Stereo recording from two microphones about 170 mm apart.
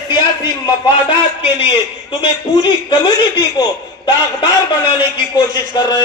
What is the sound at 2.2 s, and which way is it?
Speech, 25° left (ahead or behind).